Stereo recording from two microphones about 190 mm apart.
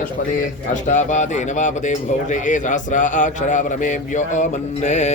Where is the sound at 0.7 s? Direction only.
40° left (ahead or behind).